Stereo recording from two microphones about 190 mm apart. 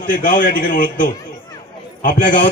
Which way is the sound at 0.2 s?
45° left (ahead or behind).